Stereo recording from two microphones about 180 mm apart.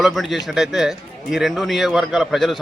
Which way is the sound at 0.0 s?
Centre (ahead or behind).